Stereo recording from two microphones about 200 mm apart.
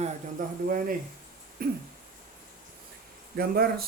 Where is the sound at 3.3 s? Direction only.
50° right (ahead or behind).